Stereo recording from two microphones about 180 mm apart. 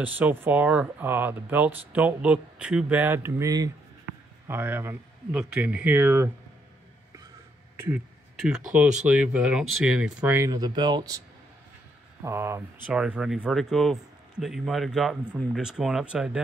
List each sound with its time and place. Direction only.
0.0 s speech: 10° right (ahead or behind)
7.7 s a sound: 10° right (ahead or behind)
8.4 s speech: 5° right (ahead or behind)